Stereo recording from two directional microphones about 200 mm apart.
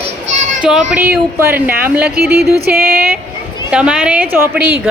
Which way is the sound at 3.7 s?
5° right (ahead or behind).